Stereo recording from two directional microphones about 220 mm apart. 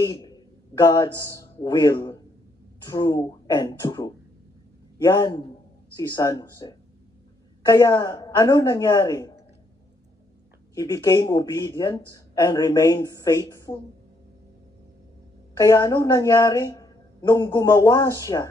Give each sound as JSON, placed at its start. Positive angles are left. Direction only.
{"t": 0.0, "sound": "a man's voice", "side_deg": 15}
{"t": 10.7, "sound": "speech", "side_deg": 15}
{"t": 15.5, "sound": "speech", "side_deg": 15}